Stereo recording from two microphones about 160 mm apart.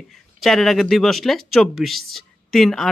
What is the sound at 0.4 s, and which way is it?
A woman's voice, centre (ahead or behind).